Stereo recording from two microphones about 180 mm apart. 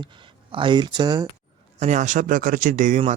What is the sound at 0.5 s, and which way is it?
Speech, 25° right (ahead or behind).